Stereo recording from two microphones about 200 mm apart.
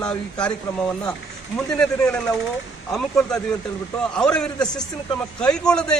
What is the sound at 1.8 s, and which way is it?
Speech, 5° left (ahead or behind).